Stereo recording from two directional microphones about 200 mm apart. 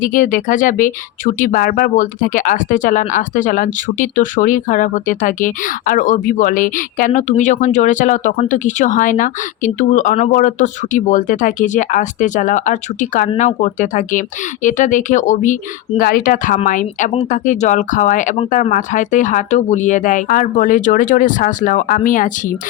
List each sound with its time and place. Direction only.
0.0 s speech: 40° left (ahead or behind)